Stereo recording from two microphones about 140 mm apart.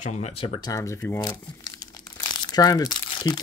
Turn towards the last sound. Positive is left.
turn(degrees=30)  # may be behind; listen again after turning